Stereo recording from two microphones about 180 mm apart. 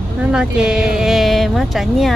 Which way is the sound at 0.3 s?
5° right (ahead or behind).